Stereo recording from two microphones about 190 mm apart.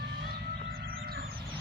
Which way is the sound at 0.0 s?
55° right (ahead or behind).